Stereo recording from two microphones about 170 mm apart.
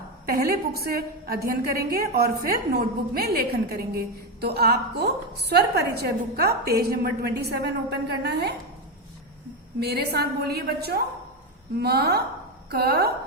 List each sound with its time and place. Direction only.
0.3 s a woman's voice: 65° right (ahead or behind)
9.8 s a woman's voice: 70° right (ahead or behind)